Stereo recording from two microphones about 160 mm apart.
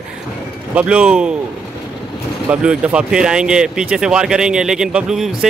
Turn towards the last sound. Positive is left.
turn(degrees=-5)  # may be behind; listen again after turning